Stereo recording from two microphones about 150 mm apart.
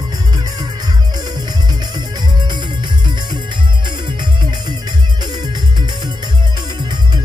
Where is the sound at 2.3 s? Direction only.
30° right (ahead or behind).